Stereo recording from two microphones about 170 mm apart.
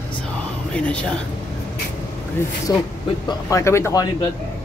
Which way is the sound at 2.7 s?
20° left (ahead or behind).